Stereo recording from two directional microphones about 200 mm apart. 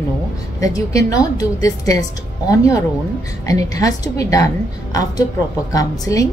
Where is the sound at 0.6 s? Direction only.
15° left (ahead or behind).